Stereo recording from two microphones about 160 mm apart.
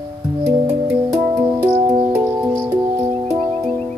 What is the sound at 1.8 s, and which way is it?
Music, 25° right (ahead or behind).